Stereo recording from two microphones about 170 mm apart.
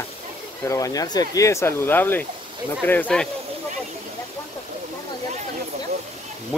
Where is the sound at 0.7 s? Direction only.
20° left (ahead or behind).